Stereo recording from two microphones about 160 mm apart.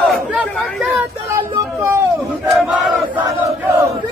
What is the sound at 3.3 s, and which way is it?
Battle cry, 15° right (ahead or behind).